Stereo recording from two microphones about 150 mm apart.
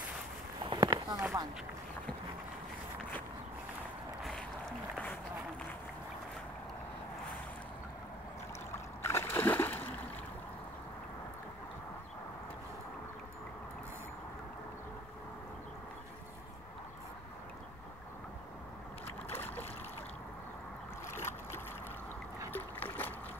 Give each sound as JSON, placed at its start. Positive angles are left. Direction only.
{"t": 0.7, "sound": "run", "side_deg": -30}
{"t": 4.2, "sound": "boat", "side_deg": 0}
{"t": 8.7, "sound": "splash", "side_deg": 15}
{"t": 19.3, "sound": "a sound", "side_deg": 15}
{"t": 21.1, "sound": "boat", "side_deg": 15}